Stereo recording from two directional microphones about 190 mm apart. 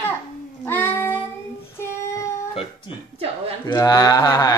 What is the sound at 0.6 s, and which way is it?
Child singing, 10° left (ahead or behind).